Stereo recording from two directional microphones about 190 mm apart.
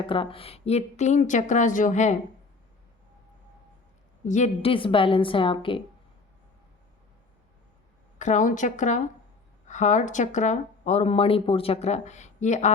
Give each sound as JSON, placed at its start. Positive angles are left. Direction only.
{"t": 0.0, "sound": "speech", "side_deg": 25}
{"t": 4.3, "sound": "a woman's voice", "side_deg": 40}
{"t": 8.2, "sound": "speech", "side_deg": 40}